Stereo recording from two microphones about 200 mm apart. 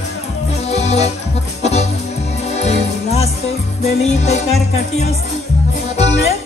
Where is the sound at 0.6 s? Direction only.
35° left (ahead or behind).